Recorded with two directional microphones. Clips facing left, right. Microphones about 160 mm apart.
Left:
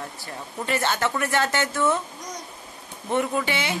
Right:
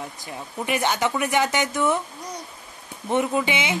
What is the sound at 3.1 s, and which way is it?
Speech, 20° right (ahead or behind).